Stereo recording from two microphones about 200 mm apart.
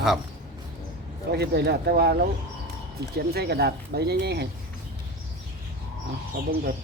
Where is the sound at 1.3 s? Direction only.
55° right (ahead or behind).